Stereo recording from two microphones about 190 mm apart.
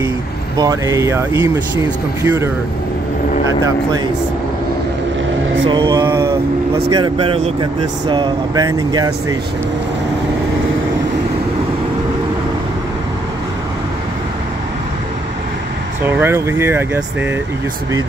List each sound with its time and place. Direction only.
0.6 s speech: 20° right (ahead or behind)
5.7 s mantra: 20° right (ahead or behind)
6.9 s speech: 25° right (ahead or behind)
16.1 s speech: 10° right (ahead or behind)